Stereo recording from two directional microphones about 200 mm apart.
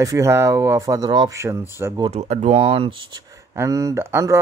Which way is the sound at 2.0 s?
35° right (ahead or behind).